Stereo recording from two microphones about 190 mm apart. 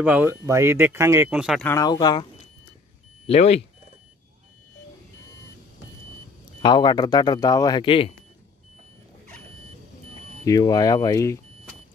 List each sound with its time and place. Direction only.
0.0 s speech: 10° right (ahead or behind)
1.7 s speech: 20° left (ahead or behind)
3.3 s speech: 35° left (ahead or behind)
6.6 s speech: 25° left (ahead or behind)
10.4 s speech: 20° left (ahead or behind)